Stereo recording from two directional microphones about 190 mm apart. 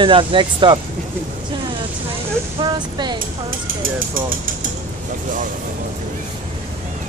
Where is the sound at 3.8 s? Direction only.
45° right (ahead or behind).